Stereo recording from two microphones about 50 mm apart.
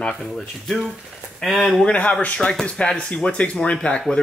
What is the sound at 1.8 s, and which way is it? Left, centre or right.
Speech, left.